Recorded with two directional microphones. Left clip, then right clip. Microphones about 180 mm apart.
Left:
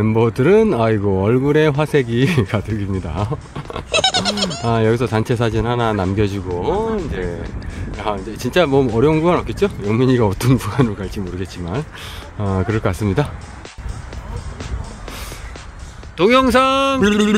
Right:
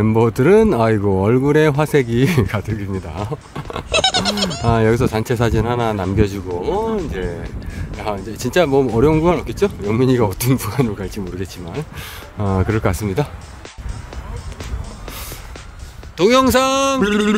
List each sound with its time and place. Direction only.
0.0 s speech: 10° right (ahead or behind)
3.9 s goat: centre (ahead or behind)
4.6 s speech: 15° right (ahead or behind)
6.6 s music: 15° right (ahead or behind)
7.1 s speech: 5° right (ahead or behind)
14.6 s music: centre (ahead or behind)
16.2 s speech: 15° right (ahead or behind)
17.0 s speech: centre (ahead or behind)